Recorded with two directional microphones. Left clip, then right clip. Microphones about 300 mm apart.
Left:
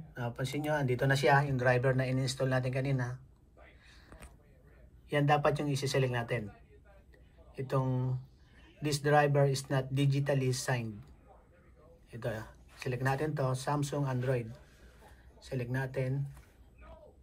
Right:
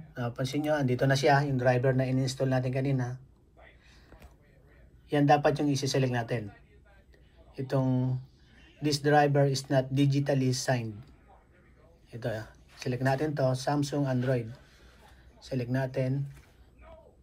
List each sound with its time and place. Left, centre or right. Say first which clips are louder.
0.1 s speech: right 4 dB; centre
5.1 s speech: right 5 dB; centre
7.5 s speech: right 4 dB; centre
12.1 s speech: right 3 dB; centre